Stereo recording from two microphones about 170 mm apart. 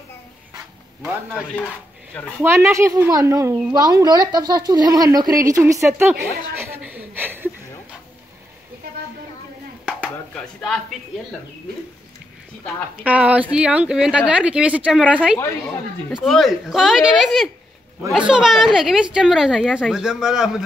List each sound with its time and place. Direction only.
2.4 s a woman's voice: 15° right (ahead or behind)
9.8 s a sound: 5° right (ahead or behind)
10.3 s a woman's voice: centre (ahead or behind)
13.0 s a woman's voice: 10° right (ahead or behind)